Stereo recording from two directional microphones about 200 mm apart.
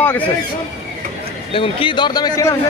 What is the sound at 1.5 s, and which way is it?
Speech, 25° left (ahead or behind).